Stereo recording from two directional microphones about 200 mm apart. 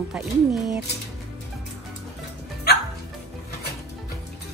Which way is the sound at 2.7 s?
55° left (ahead or behind).